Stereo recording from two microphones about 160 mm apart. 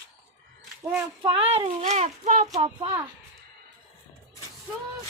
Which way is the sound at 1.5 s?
40° right (ahead or behind).